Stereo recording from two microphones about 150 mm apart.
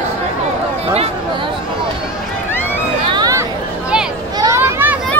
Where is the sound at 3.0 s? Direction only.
30° right (ahead or behind).